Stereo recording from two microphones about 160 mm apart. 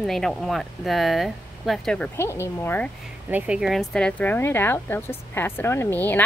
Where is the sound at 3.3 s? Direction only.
5° right (ahead or behind).